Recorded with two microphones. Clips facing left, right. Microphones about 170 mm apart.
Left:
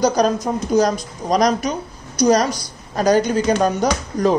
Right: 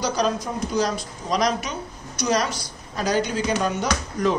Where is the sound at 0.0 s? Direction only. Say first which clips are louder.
Left 7 dB; 45° left (ahead or behind).